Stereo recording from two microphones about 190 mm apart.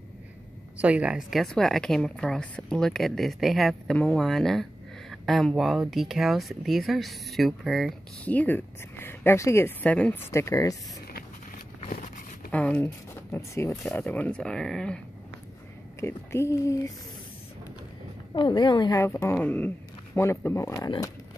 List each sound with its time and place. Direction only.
0.7 s speech: 5° right (ahead or behind); by 10.8 s 15° left (ahead or behind)
12.4 s speech: 5° left (ahead or behind)
16.0 s speech: 15° left (ahead or behind)
18.3 s speech: 25° left (ahead or behind)